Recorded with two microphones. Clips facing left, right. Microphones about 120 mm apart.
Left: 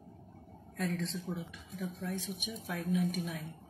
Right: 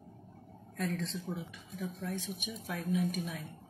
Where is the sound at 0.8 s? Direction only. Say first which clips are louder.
Even; centre (ahead or behind).